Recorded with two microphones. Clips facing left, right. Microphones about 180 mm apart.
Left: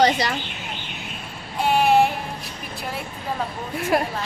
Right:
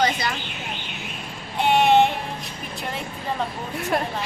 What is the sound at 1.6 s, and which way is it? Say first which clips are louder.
Child singing: right 1 dB; 5° left (ahead or behind).